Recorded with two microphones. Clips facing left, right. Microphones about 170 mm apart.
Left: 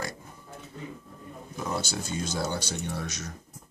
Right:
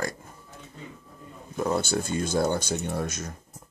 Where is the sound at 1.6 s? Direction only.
55° right (ahead or behind).